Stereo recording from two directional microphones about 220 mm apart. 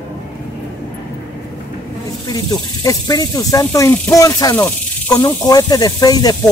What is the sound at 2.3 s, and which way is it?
Speech, 15° left (ahead or behind).